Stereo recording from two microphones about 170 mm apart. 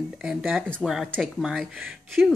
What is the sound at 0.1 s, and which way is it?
Speech, 5° right (ahead or behind).